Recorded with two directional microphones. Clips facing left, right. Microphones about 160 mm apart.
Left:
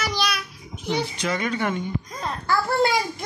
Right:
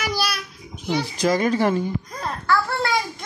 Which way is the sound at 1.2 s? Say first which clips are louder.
Right 6 dB; 35° right (ahead or behind).